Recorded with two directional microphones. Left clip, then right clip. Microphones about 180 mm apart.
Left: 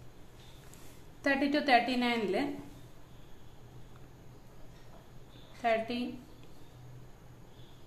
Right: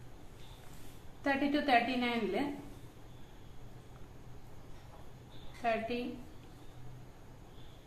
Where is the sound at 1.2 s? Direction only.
50° left (ahead or behind).